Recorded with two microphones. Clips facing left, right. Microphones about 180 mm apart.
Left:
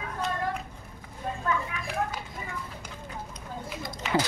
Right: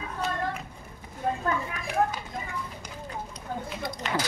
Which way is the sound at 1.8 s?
40° right (ahead or behind).